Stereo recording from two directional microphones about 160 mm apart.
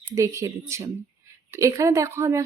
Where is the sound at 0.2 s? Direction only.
20° right (ahead or behind).